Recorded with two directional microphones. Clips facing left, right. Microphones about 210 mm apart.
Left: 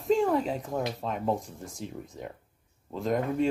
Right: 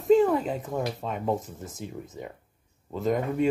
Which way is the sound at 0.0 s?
Centre (ahead or behind).